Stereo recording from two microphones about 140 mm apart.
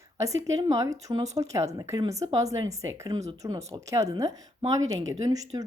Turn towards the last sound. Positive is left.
turn(degrees=-25)  # may be behind; listen again after turning